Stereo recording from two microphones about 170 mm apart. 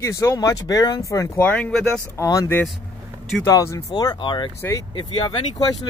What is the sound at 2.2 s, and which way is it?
Speech, 20° left (ahead or behind).